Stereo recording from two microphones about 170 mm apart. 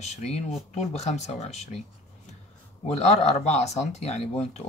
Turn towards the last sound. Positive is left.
turn(degrees=40)  # may be behind; listen again after turning